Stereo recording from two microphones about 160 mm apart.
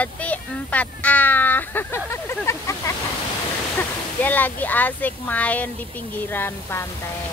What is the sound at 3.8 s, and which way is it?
Speech, 10° left (ahead or behind).